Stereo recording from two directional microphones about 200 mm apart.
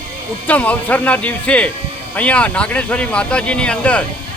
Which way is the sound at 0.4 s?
10° left (ahead or behind).